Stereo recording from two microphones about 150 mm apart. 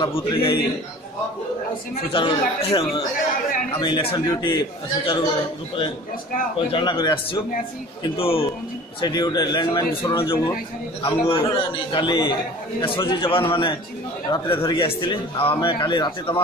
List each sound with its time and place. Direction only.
0.0 s a man's voice: 35° left (ahead or behind)
2.1 s a man's voice: 35° left (ahead or behind)
6.7 s a man's voice: 30° left (ahead or behind)
8.2 s a man's voice: 35° left (ahead or behind)